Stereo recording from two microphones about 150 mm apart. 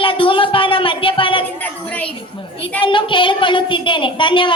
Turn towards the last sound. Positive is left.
turn(degrees=35)  # may be behind; listen again after turning